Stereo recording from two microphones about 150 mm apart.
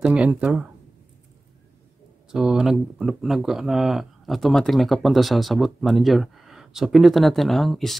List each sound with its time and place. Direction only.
0.0 s speech: 10° right (ahead or behind)
2.3 s speech: 5° right (ahead or behind)